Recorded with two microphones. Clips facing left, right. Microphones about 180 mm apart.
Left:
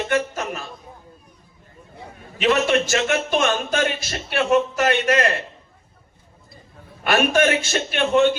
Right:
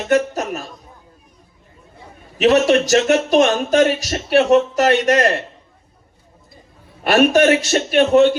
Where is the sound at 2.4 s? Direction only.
40° right (ahead or behind).